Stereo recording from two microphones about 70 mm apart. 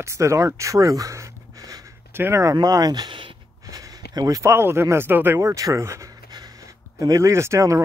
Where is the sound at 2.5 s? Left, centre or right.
Right.